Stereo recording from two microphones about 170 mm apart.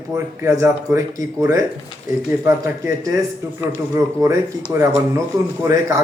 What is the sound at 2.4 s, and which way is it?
Speech, 20° right (ahead or behind).